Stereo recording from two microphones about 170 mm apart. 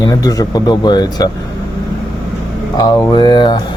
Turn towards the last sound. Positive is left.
turn(degrees=25)  # may be behind; listen again after turning